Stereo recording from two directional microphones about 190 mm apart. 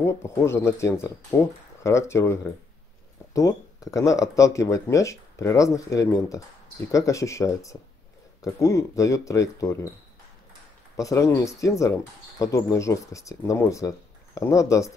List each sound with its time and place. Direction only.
0.0 s speech: 15° left (ahead or behind)
11.0 s speech: 15° left (ahead or behind)